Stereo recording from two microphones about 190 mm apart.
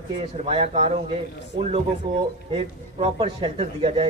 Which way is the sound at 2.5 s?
30° right (ahead or behind).